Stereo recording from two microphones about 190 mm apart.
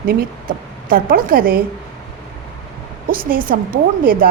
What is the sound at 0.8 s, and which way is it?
Speech, 50° right (ahead or behind).